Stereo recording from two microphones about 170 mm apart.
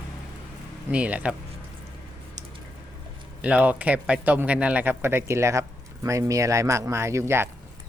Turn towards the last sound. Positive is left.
turn(degrees=-15)  # may be behind; listen again after turning